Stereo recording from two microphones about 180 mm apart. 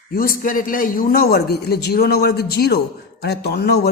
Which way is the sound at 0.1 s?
55° left (ahead or behind).